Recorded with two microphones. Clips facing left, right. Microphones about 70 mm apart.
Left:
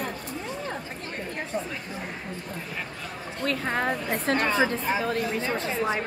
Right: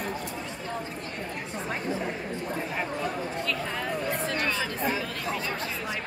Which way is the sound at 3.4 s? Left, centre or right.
Left.